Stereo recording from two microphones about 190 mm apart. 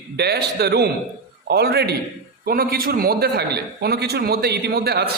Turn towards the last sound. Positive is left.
turn(degrees=-55)  # may be behind; listen again after turning